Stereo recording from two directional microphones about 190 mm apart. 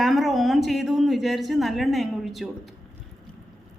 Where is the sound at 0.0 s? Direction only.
Centre (ahead or behind).